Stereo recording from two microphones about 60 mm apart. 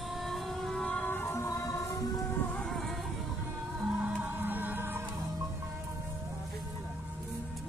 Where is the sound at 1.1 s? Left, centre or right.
Left.